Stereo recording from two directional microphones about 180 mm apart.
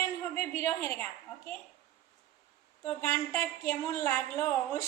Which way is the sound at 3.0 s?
15° left (ahead or behind).